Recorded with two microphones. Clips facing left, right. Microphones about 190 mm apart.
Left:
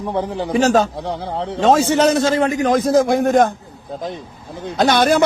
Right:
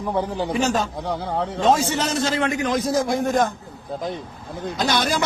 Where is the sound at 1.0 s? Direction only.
25° left (ahead or behind).